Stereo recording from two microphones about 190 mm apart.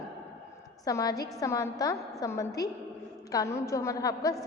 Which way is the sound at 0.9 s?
20° left (ahead or behind).